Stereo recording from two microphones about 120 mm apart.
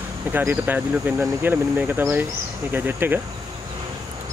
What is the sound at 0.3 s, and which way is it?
Speech, 15° right (ahead or behind).